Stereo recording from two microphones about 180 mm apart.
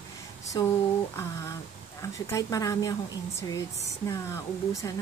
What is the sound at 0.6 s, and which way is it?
Speech, 20° left (ahead or behind).